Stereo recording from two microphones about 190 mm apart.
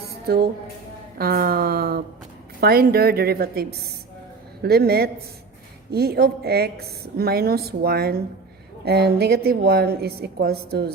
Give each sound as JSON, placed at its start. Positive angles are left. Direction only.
{"t": 0.1, "sound": "music", "side_deg": -55}
{"t": 1.2, "sound": "a woman's voice", "side_deg": -50}